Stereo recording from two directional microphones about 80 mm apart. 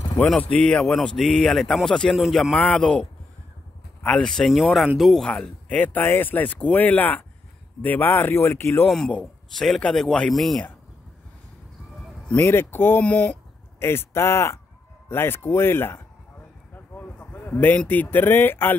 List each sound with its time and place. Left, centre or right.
0.5 s speech: centre
2.1 s speech: centre
2.5 s speech: centre
5.3 s speech: centre; by 8.9 s left
9.6 s speech: centre
12.4 s speech: left
13.0 s speech: centre
13.7 s speech: left
16.7 s a sound: left